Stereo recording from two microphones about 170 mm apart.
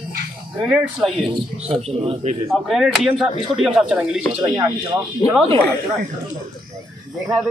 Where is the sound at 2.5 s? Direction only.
Centre (ahead or behind).